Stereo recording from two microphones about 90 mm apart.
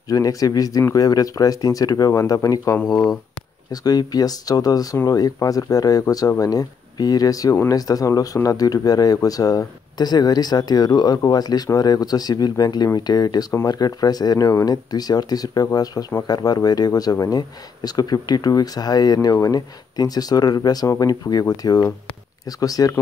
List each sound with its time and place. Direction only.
0.1 s speech: 40° left (ahead or behind)